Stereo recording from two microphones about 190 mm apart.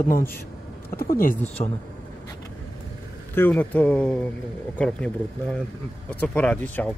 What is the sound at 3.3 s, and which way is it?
Speech, 10° left (ahead or behind).